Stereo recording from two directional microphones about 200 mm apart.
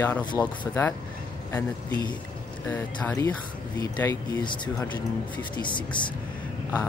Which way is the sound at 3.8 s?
20° left (ahead or behind).